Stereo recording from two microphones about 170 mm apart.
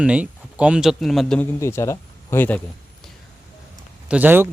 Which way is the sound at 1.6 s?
15° left (ahead or behind).